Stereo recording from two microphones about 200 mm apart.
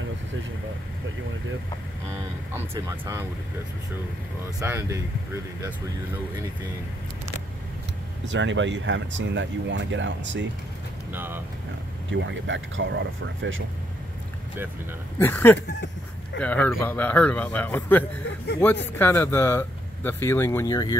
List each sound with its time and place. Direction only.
2.5 s speech: 15° right (ahead or behind)
4.6 s speech: 15° right (ahead or behind)
8.3 s speech: 65° right (ahead or behind)
11.1 s speech: 10° right (ahead or behind)
12.1 s speech: 65° right (ahead or behind)
15.1 s speech: 10° left (ahead or behind)